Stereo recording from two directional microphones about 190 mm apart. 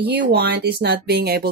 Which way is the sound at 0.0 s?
55° right (ahead or behind).